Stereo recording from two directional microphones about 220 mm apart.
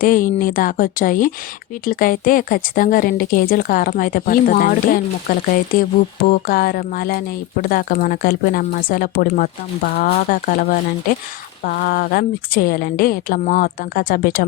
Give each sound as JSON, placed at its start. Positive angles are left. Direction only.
{"t": 0.0, "sound": "a woman's voice", "side_deg": 40}
{"t": 6.5, "sound": "a woman's voice", "side_deg": 40}